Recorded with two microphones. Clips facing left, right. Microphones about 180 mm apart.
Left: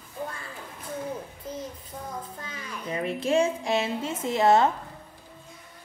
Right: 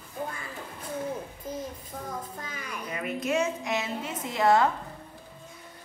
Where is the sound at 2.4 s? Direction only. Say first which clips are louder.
Left 1 dB; 30° left (ahead or behind).